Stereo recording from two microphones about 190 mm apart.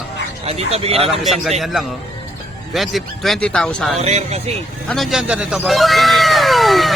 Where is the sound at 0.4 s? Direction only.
30° right (ahead or behind).